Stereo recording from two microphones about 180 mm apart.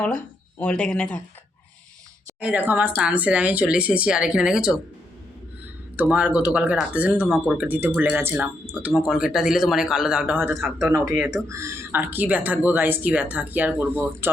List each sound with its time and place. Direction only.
0.0 s speech: 5° left (ahead or behind)
2.4 s speech: 10° right (ahead or behind)
6.0 s a man's voice: 10° right (ahead or behind)
10.6 s a man's voice: centre (ahead or behind)
10.9 s speech: 15° right (ahead or behind)